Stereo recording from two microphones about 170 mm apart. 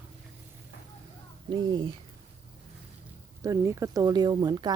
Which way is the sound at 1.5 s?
30° right (ahead or behind).